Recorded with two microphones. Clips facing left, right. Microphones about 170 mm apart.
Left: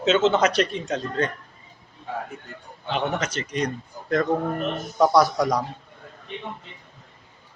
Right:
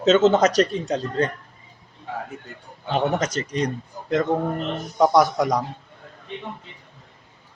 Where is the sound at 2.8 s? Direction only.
40° right (ahead or behind); by 5.6 s 20° right (ahead or behind).